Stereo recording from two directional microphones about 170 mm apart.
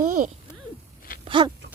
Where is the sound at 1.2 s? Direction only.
30° right (ahead or behind).